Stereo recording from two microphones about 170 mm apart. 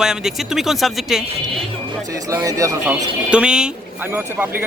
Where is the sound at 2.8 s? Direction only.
5° right (ahead or behind).